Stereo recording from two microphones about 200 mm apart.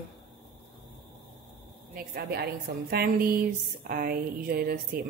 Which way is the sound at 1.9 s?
50° right (ahead or behind).